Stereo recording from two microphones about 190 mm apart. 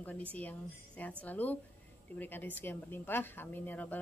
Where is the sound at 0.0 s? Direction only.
10° left (ahead or behind).